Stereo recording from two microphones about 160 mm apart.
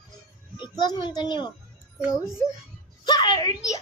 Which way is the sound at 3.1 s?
25° left (ahead or behind).